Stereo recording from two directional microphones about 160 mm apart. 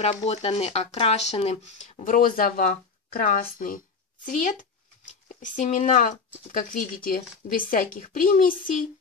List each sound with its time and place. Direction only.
0.0 s speech: 35° left (ahead or behind)
2.1 s a woman's voice: 60° left (ahead or behind)